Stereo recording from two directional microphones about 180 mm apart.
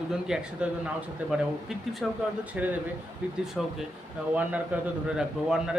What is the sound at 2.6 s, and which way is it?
Speech, 5° right (ahead or behind).